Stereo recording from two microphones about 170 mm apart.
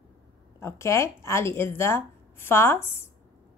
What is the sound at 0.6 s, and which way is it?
A woman's voice, 15° left (ahead or behind).